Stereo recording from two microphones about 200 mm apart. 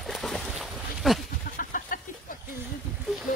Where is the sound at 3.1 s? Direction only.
Centre (ahead or behind).